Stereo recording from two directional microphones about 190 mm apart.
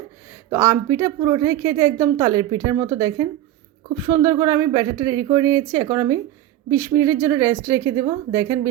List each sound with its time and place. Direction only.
0.3 s a woman's voice: 15° right (ahead or behind)